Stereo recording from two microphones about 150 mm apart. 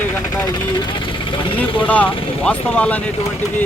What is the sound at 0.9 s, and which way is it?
Speech, 35° left (ahead or behind).